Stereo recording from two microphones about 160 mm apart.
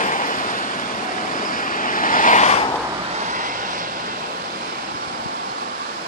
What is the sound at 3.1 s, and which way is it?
Vehicle, 50° right (ahead or behind).